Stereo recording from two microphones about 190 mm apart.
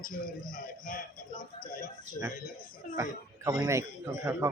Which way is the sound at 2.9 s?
15° right (ahead or behind).